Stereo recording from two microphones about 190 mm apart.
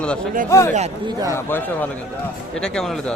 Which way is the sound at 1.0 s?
20° right (ahead or behind).